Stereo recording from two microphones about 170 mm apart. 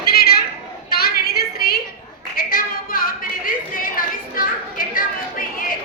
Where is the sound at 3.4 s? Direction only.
55° left (ahead or behind).